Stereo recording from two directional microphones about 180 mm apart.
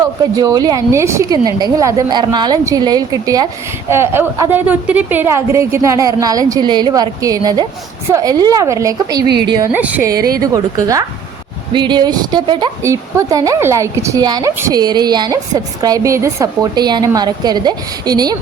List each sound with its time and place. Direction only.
0.3 s a woman's voice: 20° right (ahead or behind)
9.7 s a woman's voice: 10° right (ahead or behind)